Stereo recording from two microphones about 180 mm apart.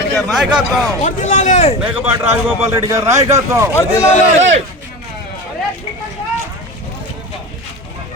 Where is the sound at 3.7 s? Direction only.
15° left (ahead or behind).